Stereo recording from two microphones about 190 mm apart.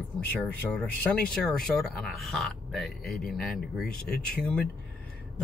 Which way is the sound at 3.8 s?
55° left (ahead or behind).